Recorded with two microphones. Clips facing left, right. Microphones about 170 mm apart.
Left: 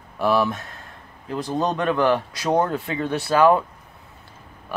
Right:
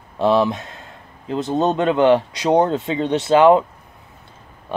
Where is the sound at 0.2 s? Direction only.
25° right (ahead or behind).